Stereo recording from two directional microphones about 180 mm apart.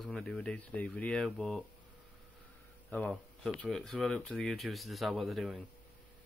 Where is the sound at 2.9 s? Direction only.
5° left (ahead or behind).